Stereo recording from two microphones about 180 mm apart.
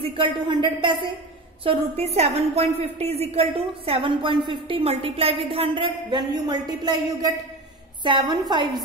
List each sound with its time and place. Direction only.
0.0 s a woman's voice: 30° right (ahead or behind)